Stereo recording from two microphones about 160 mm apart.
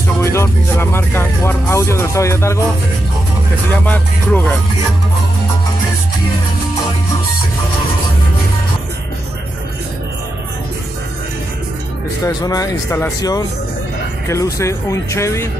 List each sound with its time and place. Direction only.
0.2 s speech: 15° left (ahead or behind)
3.8 s speech: 10° left (ahead or behind)
12.2 s speech: 25° left (ahead or behind)